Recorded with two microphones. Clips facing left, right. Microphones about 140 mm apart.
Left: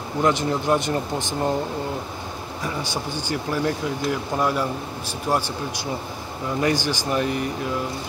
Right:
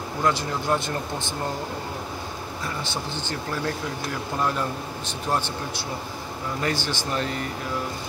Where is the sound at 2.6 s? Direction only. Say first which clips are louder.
Left 4 dB; 15° left (ahead or behind).